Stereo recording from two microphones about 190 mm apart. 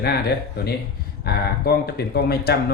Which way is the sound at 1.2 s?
55° left (ahead or behind).